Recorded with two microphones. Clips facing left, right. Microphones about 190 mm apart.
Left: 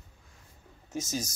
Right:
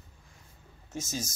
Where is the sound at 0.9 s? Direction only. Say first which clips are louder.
Left 2 dB; 15° left (ahead or behind).